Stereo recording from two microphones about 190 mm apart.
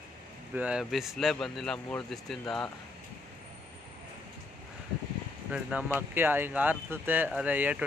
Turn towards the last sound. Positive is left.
turn(degrees=-10)  # may be behind; listen again after turning